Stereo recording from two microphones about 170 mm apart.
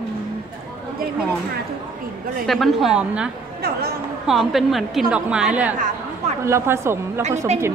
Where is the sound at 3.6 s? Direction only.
65° right (ahead or behind).